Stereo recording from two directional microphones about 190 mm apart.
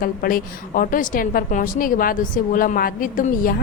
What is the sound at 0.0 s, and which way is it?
A woman's voice, 50° left (ahead or behind).